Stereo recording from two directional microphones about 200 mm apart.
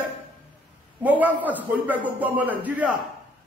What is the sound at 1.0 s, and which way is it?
A man's voice, 10° right (ahead or behind).